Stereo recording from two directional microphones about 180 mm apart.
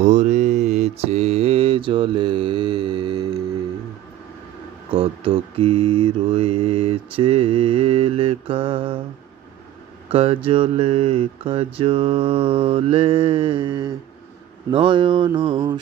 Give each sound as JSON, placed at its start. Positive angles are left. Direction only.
{"t": 0.0, "sound": "mantra", "side_deg": -40}
{"t": 4.9, "sound": "mantra", "side_deg": -30}
{"t": 10.0, "sound": "mantra", "side_deg": -30}